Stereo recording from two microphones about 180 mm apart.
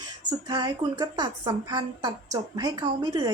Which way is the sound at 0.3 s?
20° right (ahead or behind).